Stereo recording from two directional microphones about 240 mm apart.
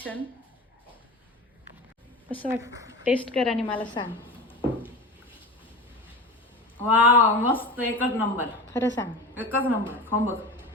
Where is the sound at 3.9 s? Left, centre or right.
Left.